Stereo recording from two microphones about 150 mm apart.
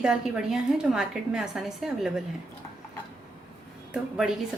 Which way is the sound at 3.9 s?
5° right (ahead or behind).